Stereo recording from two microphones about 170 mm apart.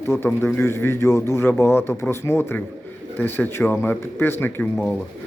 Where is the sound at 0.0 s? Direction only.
15° left (ahead or behind).